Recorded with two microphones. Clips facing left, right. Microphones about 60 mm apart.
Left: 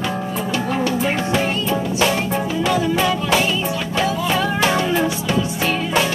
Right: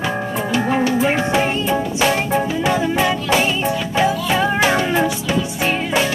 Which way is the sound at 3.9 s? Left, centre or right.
Centre.